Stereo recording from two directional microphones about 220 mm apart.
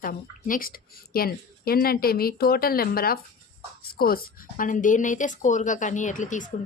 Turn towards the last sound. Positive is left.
turn(degrees=35)  # may be behind; listen again after turning